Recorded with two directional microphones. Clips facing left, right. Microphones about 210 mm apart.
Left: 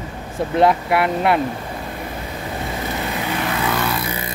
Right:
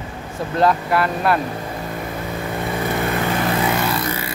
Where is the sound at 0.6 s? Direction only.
20° left (ahead or behind).